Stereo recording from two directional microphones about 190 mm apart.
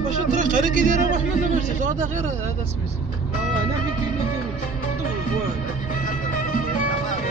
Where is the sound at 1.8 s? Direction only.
40° right (ahead or behind).